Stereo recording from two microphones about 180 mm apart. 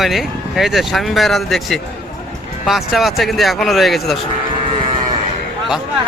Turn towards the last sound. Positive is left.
turn(degrees=0)  # may be behind; listen again after turning